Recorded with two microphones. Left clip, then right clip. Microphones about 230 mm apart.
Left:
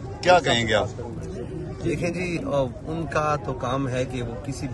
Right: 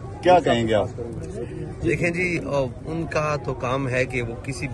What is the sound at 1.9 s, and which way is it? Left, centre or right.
Speech, centre.